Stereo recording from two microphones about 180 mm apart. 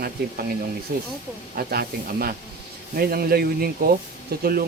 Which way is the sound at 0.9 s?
55° right (ahead or behind).